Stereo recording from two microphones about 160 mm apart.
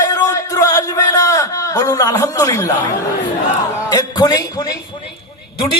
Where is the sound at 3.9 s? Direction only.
25° left (ahead or behind).